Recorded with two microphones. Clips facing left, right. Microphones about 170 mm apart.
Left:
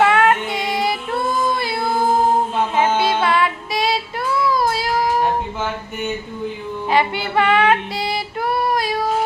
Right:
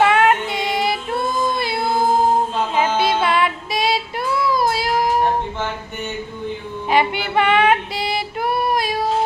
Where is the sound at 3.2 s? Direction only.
25° right (ahead or behind).